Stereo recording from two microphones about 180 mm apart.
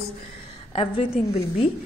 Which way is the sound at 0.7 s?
30° left (ahead or behind).